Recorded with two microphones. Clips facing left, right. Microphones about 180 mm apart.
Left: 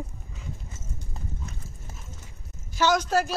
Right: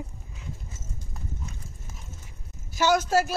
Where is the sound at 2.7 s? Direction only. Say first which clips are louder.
Right 1 dB; 10° right (ahead or behind).